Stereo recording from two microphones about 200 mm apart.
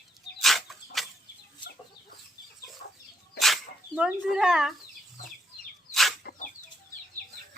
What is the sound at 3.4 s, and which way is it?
Dog, centre (ahead or behind).